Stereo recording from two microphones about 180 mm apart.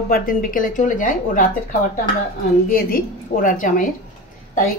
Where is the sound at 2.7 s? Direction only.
55° left (ahead or behind).